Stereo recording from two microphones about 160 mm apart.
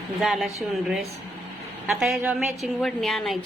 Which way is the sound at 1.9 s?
5° right (ahead or behind).